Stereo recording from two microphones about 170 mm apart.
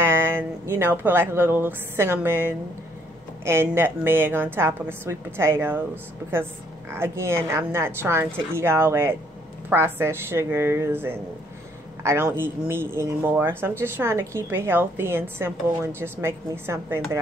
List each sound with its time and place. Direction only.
0.0 s a woman's voice: 15° right (ahead or behind)
6.9 s speech: 15° right (ahead or behind)